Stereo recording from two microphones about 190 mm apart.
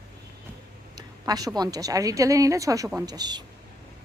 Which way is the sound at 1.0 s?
20° right (ahead or behind).